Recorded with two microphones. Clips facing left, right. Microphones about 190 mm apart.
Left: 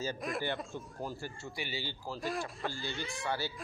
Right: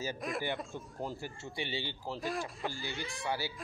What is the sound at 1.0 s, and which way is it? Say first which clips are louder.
Speech: right 2 dB; 20° right (ahead or behind).